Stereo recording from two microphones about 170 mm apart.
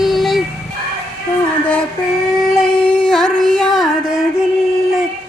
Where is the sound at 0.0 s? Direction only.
Centre (ahead or behind).